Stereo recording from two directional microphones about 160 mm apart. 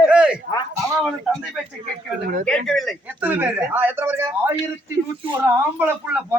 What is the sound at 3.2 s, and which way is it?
Speech, 10° right (ahead or behind).